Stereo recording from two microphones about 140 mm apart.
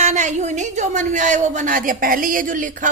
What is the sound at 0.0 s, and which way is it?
A man's voice, 60° right (ahead or behind).